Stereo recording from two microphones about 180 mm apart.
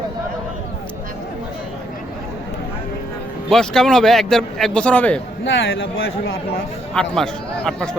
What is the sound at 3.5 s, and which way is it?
A man's voice, 5° left (ahead or behind).